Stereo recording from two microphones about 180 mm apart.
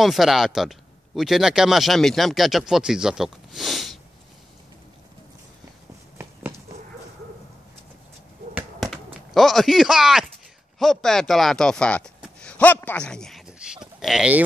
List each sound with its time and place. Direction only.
0.0 s speech: centre (ahead or behind)
8.5 s basketball bounce: centre (ahead or behind)
10.8 s speech: centre (ahead or behind)
12.4 s a sound: 5° left (ahead or behind)